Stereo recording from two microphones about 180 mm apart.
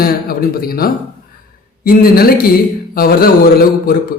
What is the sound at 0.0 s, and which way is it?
A man's voice, 55° left (ahead or behind).